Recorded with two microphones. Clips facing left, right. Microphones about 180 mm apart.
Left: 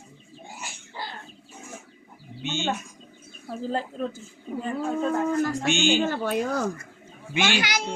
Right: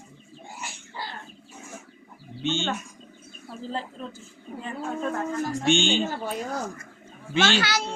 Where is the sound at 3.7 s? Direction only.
50° left (ahead or behind).